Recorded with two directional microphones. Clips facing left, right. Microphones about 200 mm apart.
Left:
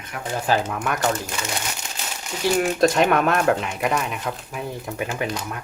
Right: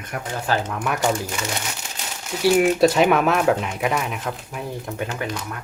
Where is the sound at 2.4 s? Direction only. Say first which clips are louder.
Right 3 dB; 10° right (ahead or behind).